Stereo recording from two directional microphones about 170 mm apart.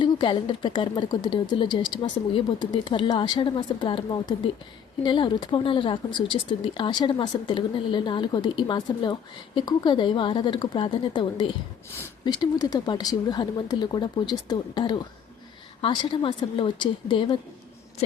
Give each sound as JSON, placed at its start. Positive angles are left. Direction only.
{"t": 0.0, "sound": "a woman's voice", "side_deg": 30}